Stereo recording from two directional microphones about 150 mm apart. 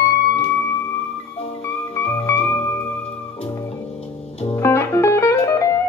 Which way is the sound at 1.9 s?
15° left (ahead or behind).